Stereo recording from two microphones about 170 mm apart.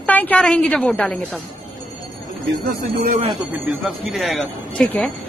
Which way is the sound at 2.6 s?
55° right (ahead or behind).